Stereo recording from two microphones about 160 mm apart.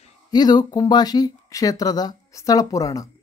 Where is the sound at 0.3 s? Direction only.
25° left (ahead or behind).